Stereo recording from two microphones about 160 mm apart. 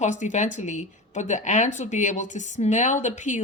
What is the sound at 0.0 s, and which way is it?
Speech, 50° left (ahead or behind).